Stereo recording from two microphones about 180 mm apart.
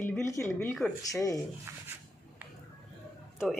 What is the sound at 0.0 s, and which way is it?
Speech, 15° left (ahead or behind).